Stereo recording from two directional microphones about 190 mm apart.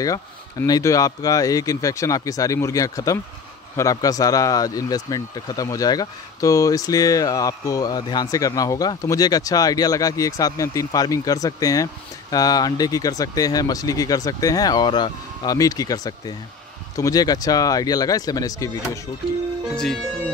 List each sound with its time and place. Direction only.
0.0 s speech: 20° left (ahead or behind)